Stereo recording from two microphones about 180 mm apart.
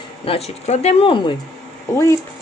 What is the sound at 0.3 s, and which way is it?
Speech, 35° left (ahead or behind).